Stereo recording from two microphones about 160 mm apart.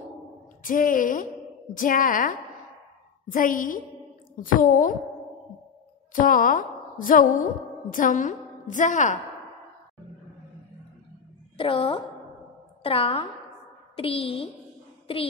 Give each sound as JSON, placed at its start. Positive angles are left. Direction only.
{"t": 0.7, "sound": "a woman's voice", "side_deg": 60}
{"t": 6.1, "sound": "a woman's voice", "side_deg": 60}
{"t": 11.5, "sound": "speech", "side_deg": 35}